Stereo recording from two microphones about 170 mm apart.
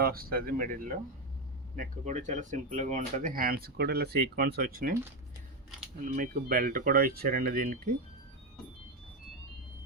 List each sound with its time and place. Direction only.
0.0 s speech: 60° right (ahead or behind)
6.1 s speech: 50° right (ahead or behind)